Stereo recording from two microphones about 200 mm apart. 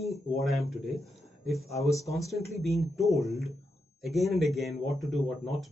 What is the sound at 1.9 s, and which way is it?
Speech, 15° left (ahead or behind).